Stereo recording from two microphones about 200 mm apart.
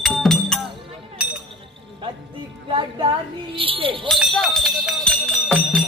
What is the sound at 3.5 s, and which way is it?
Speech, 25° right (ahead or behind).